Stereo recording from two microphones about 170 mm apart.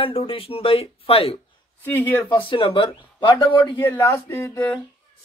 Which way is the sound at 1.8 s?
10° left (ahead or behind).